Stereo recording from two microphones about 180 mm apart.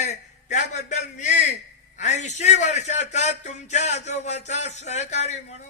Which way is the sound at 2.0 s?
40° left (ahead or behind).